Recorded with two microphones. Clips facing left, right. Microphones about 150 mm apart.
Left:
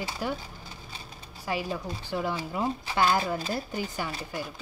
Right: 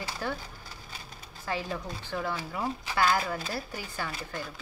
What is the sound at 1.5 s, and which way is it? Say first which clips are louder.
Speech: left 2 dB; 15° left (ahead or behind).